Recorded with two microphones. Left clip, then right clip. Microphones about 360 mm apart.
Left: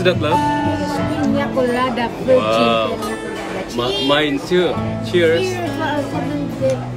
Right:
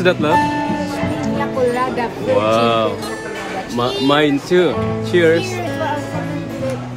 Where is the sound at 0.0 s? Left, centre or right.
Centre.